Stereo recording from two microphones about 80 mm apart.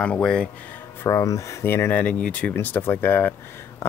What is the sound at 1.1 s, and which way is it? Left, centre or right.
Speech, left.